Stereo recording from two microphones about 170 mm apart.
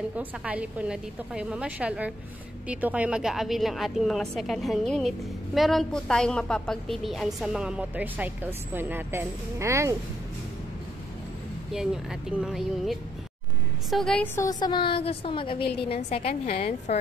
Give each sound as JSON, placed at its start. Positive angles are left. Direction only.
{"t": 0.1, "sound": "a woman's voice", "side_deg": -10}
{"t": 11.7, "sound": "a woman's voice", "side_deg": -5}
{"t": 14.3, "sound": "a woman's voice", "side_deg": 20}